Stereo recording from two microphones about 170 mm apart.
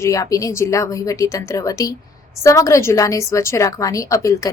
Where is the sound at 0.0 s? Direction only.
15° left (ahead or behind).